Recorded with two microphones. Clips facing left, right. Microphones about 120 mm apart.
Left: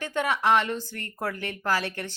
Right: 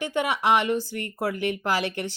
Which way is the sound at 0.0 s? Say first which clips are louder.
Right 1 dB; 15° right (ahead or behind).